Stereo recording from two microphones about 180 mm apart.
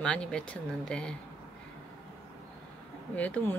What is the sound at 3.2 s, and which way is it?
Speech, 10° left (ahead or behind).